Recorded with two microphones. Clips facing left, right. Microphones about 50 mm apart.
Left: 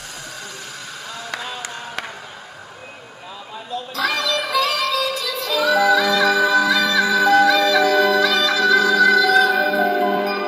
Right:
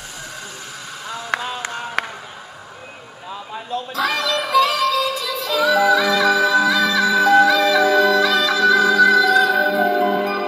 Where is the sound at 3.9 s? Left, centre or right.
Centre.